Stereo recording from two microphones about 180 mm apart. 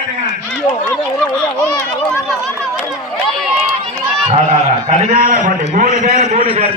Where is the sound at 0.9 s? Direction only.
5° left (ahead or behind).